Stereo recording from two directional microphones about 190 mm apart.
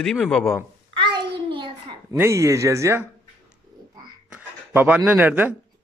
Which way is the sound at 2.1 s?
15° right (ahead or behind).